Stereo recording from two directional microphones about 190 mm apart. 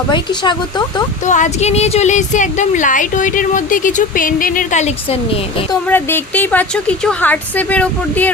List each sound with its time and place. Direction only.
0.1 s speech: 25° left (ahead or behind)
1.3 s a woman's voice: 40° left (ahead or behind)
5.9 s a woman's voice: 10° left (ahead or behind)